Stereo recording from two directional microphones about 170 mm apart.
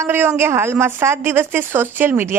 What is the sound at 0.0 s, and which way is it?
A woman's voice, 15° right (ahead or behind).